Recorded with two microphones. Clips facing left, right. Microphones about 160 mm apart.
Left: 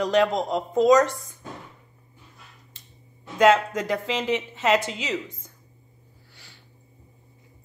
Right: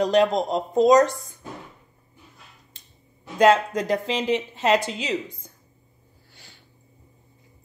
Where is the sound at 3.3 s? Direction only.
35° right (ahead or behind).